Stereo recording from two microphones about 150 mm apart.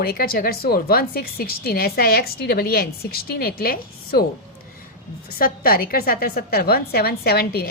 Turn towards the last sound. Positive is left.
turn(degrees=90)